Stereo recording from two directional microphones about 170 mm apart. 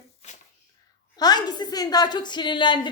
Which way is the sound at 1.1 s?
25° left (ahead or behind).